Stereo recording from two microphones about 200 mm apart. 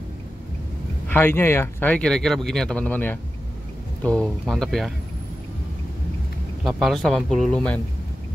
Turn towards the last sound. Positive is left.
turn(degrees=5)  # may be behind; listen again after turning